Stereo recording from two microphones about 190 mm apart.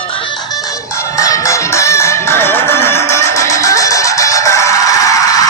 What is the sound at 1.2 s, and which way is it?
Music, 15° left (ahead or behind).